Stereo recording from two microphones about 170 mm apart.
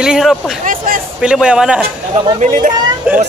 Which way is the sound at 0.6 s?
55° right (ahead or behind).